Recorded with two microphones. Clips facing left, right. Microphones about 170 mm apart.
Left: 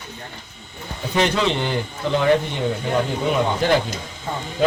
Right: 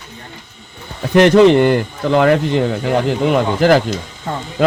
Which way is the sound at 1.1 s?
70° right (ahead or behind).